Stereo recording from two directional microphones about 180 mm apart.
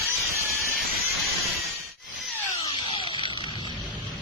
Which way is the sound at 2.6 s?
25° left (ahead or behind).